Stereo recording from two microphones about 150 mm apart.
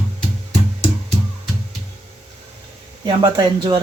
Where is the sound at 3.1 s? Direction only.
30° right (ahead or behind).